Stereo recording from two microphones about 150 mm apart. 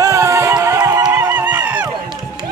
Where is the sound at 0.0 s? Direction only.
20° right (ahead or behind).